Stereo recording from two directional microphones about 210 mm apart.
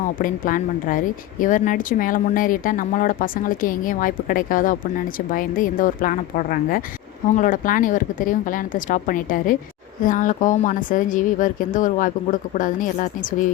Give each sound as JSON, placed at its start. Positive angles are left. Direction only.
{"t": 0.2, "sound": "speech", "side_deg": 40}